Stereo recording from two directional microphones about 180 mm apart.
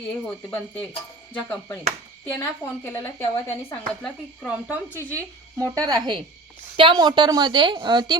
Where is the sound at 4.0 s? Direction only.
5° right (ahead or behind).